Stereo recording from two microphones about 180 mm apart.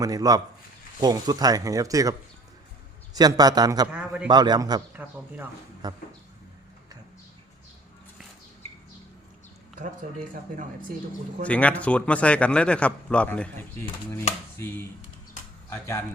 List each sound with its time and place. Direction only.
0.0 s speech: 20° right (ahead or behind)
3.2 s speech: 20° right (ahead or behind)
3.9 s a man's voice: 5° right (ahead or behind)
4.3 s speech: 20° right (ahead or behind)
5.0 s a man's voice: 10° right (ahead or behind)
5.8 s speech: 20° right (ahead or behind)
11.4 s speech: 5° left (ahead or behind)
15.7 s speech: 10° left (ahead or behind)